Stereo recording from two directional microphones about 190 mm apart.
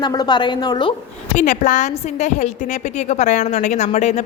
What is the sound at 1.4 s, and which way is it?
A woman's voice, 40° left (ahead or behind).